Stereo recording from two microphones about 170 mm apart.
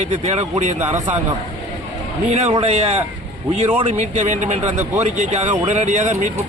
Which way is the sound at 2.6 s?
35° right (ahead or behind).